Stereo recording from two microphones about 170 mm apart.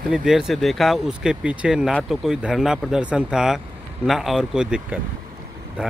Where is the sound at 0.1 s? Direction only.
5° right (ahead or behind).